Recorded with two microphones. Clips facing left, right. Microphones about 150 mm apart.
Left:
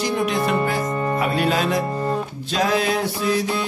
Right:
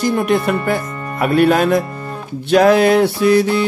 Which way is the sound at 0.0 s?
55° right (ahead or behind).